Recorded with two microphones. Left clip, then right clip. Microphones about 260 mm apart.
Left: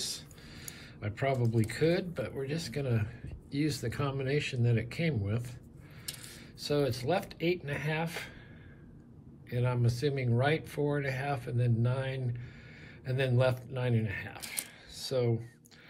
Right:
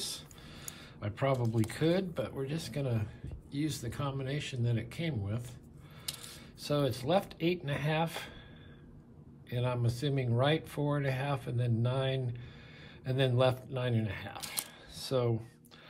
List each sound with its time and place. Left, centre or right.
0.0 s a sound: centre
1.7 s speech: centre
9.5 s speech: centre